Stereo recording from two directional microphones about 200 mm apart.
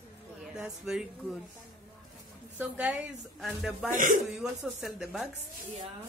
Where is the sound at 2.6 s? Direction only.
5° right (ahead or behind).